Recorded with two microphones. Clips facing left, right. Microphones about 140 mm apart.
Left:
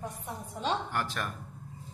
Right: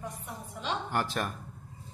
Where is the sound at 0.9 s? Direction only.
25° right (ahead or behind).